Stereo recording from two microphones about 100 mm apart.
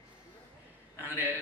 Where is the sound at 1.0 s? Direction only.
20° right (ahead or behind).